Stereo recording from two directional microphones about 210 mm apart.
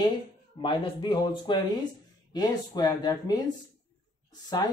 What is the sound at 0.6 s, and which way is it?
Speech, 25° left (ahead or behind).